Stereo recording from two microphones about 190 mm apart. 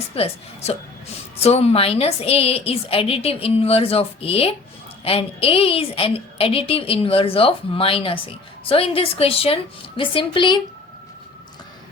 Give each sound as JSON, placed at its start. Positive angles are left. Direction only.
{"t": 0.2, "sound": "a woman's voice", "side_deg": 35}